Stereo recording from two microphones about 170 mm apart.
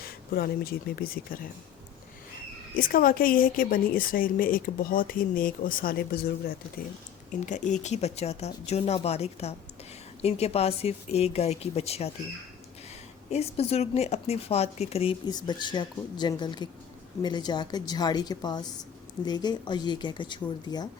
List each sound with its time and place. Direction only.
0.0 s speech: 65° left (ahead or behind)
2.7 s speech: 55° left (ahead or behind)
7.4 s speech: 45° left (ahead or behind)
13.3 s speech: 35° left (ahead or behind)
15.3 s speech: 25° left (ahead or behind)